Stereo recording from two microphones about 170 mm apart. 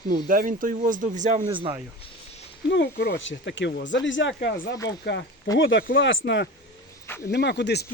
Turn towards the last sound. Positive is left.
turn(degrees=80)